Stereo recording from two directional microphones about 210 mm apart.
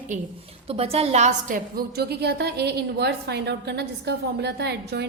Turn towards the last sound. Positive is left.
turn(degrees=-50)  # may be behind; listen again after turning